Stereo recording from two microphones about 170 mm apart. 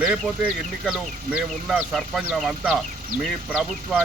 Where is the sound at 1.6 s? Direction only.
Centre (ahead or behind).